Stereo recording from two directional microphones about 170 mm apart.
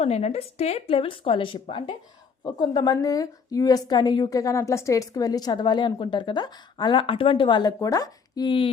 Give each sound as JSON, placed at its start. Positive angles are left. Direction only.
{"t": 0.0, "sound": "a woman's voice", "side_deg": 35}